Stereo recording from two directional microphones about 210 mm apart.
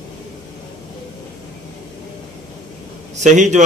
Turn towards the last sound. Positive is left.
turn(degrees=-35)  # may be behind; listen again after turning